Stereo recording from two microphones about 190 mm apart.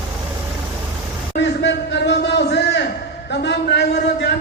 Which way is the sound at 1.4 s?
65° left (ahead or behind).